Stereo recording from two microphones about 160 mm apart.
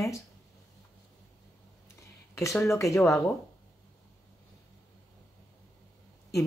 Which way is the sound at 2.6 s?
20° left (ahead or behind).